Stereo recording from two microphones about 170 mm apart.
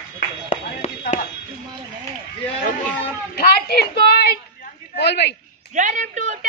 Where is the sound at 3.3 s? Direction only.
65° left (ahead or behind).